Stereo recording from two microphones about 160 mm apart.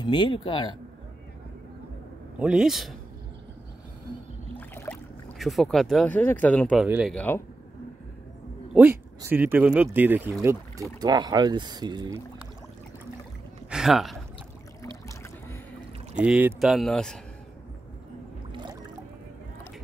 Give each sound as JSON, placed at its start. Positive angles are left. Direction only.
{"t": 0.0, "sound": "a man's voice", "side_deg": 30}
{"t": 2.3, "sound": "speech", "side_deg": -5}
{"t": 4.6, "sound": "rowboat", "side_deg": 10}
{"t": 5.4, "sound": "speech", "side_deg": 0}
{"t": 6.8, "sound": "speech", "side_deg": -5}
{"t": 7.2, "sound": "speech", "side_deg": 10}
{"t": 8.7, "sound": "speech", "side_deg": -10}
{"t": 11.0, "sound": "speech", "side_deg": -25}
{"t": 13.7, "sound": "speech", "side_deg": -5}
{"t": 14.8, "sound": "boat", "side_deg": 15}
{"t": 16.2, "sound": "speech", "side_deg": -10}
{"t": 18.5, "sound": "boat", "side_deg": -30}